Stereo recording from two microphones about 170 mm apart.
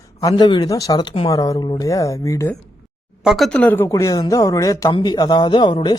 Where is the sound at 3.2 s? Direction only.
Centre (ahead or behind).